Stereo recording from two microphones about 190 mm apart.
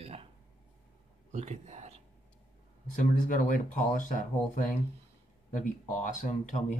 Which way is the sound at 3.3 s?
45° left (ahead or behind).